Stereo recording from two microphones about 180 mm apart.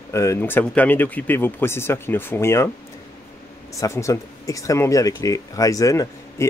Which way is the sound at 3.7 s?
15° left (ahead or behind).